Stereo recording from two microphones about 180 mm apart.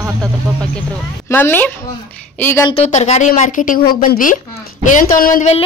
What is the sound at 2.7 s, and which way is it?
A woman's voice, 35° left (ahead or behind).